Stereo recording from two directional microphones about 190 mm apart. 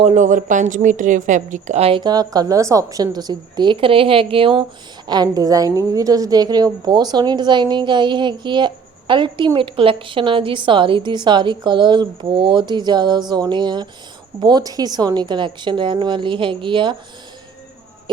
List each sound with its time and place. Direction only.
0.0 s a woman's voice: 40° right (ahead or behind)